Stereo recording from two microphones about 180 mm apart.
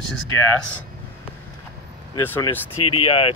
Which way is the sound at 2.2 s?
25° left (ahead or behind).